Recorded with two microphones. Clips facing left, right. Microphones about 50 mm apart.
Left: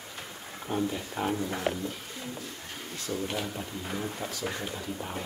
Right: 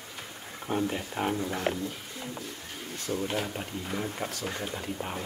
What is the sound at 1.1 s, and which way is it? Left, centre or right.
Speech, centre.